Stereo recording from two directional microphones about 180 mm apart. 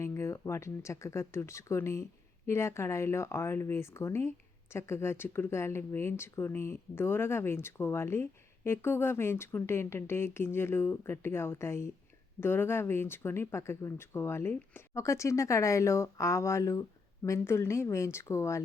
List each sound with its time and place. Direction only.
0.0 s speech: 15° left (ahead or behind)